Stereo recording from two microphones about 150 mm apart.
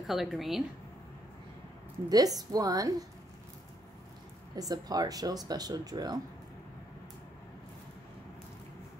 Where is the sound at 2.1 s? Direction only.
25° right (ahead or behind).